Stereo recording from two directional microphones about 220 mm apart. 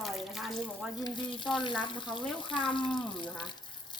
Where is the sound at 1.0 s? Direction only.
20° left (ahead or behind).